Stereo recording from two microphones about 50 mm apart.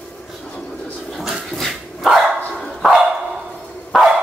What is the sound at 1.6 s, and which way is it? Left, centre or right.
Dog, centre.